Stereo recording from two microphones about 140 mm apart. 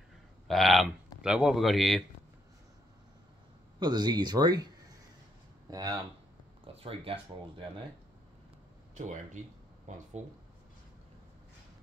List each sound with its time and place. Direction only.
0.5 s speech: centre (ahead or behind)
3.8 s speech: 30° right (ahead or behind)
5.7 s speech: 25° right (ahead or behind)
6.6 s speech: 40° right (ahead or behind)
8.9 s speech: 60° right (ahead or behind)